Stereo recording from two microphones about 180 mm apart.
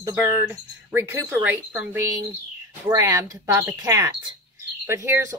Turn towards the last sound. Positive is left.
turn(degrees=-15)  # may be behind; listen again after turning